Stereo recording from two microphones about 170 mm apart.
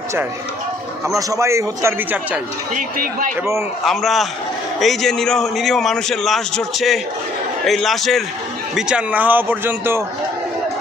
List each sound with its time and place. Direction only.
1.1 s a man's voice: 20° right (ahead or behind)
2.7 s speech: 50° right (ahead or behind)
3.8 s a man's voice: centre (ahead or behind)